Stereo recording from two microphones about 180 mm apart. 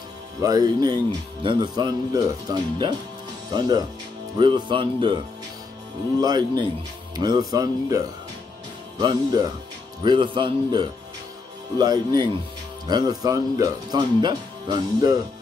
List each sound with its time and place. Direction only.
0.4 s speech: 20° right (ahead or behind)
6.2 s speech: 25° right (ahead or behind)